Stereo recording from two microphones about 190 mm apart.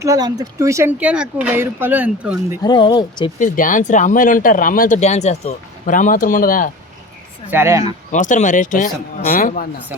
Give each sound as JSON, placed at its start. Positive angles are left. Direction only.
{"t": 0.0, "sound": "speech", "side_deg": -20}
{"t": 2.6, "sound": "speech", "side_deg": 25}
{"t": 3.3, "sound": "speech", "side_deg": 45}
{"t": 7.5, "sound": "speech", "side_deg": -15}
{"t": 8.1, "sound": "speech", "side_deg": 40}